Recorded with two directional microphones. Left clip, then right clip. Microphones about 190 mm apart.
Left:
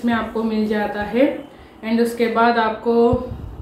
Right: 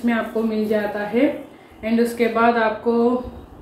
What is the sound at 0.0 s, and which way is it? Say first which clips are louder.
A woman's voice: even; 5° left (ahead or behind).